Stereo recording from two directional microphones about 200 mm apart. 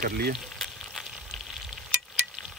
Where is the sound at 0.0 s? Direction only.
50° right (ahead or behind).